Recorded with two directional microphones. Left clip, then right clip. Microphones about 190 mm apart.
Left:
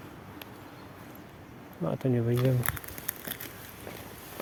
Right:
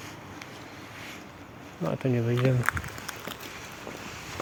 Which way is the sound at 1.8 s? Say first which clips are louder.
Right 1 dB; 10° left (ahead or behind).